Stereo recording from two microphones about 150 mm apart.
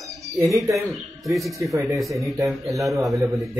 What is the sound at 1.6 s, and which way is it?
Speech, 20° right (ahead or behind).